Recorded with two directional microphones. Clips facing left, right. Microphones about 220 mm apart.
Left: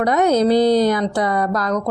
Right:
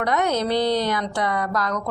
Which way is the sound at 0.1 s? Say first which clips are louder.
Left 7 dB; 35° left (ahead or behind).